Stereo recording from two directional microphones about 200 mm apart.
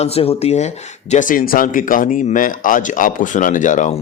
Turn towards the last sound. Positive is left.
turn(degrees=40)  # may be behind; listen again after turning